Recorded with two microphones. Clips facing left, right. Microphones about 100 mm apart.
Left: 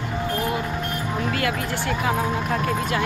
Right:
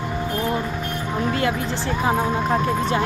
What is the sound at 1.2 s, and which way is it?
Speech, 20° right (ahead or behind).